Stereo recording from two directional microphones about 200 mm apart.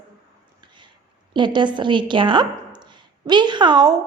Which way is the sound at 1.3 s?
25° right (ahead or behind).